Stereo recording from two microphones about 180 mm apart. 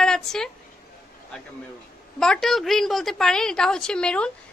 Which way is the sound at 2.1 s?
5° left (ahead or behind).